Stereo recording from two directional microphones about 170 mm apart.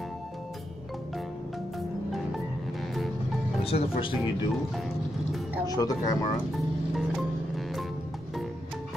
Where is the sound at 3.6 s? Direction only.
35° left (ahead or behind).